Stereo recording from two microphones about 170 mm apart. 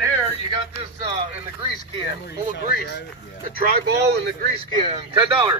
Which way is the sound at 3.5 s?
65° right (ahead or behind).